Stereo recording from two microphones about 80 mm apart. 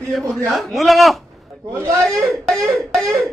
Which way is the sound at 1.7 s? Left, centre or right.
Right.